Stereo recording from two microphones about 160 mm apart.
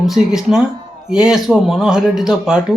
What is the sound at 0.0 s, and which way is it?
Speech, centre (ahead or behind).